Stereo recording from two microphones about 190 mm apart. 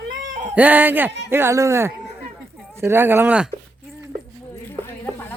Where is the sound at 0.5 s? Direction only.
10° right (ahead or behind).